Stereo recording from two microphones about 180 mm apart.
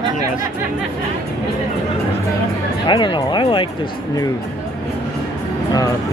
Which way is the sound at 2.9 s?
25° left (ahead or behind).